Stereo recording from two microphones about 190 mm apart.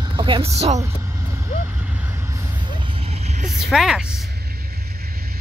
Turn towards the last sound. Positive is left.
turn(degrees=-5)  # may be behind; listen again after turning